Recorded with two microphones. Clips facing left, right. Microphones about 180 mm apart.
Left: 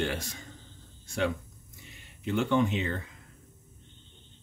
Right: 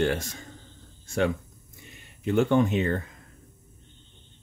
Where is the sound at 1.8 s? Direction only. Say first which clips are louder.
Right 5 dB; 50° right (ahead or behind).